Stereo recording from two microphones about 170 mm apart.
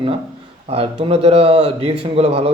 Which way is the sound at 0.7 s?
35° right (ahead or behind).